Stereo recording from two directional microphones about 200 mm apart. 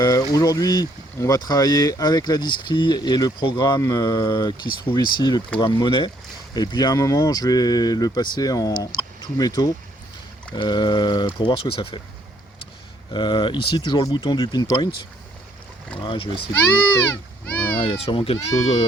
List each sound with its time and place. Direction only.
0.0 s speech: 20° left (ahead or behind)
13.1 s speech: 25° left (ahead or behind)
16.0 s speech: 25° left (ahead or behind)
16.6 s a child's voice: 10° left (ahead or behind)
17.7 s speech: 30° left (ahead or behind)